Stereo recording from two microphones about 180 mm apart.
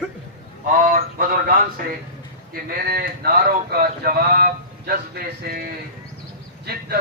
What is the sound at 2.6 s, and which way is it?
A man's voice, 60° right (ahead or behind).